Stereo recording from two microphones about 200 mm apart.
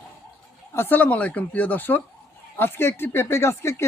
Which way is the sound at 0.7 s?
10° left (ahead or behind).